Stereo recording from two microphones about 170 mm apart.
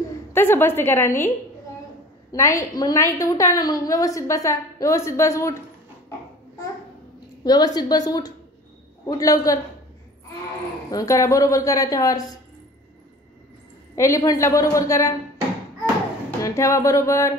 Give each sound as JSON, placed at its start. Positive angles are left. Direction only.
{"t": 0.3, "sound": "a woman's voice", "side_deg": 15}
{"t": 2.3, "sound": "a woman's voice", "side_deg": 20}
{"t": 7.4, "sound": "a woman's voice", "side_deg": 25}
{"t": 10.9, "sound": "a woman's voice", "side_deg": 20}
{"t": 13.9, "sound": "a woman's voice", "side_deg": 15}
{"t": 16.3, "sound": "speech", "side_deg": 20}